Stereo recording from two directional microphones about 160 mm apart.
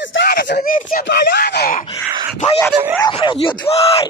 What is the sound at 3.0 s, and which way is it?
Speech, 30° left (ahead or behind).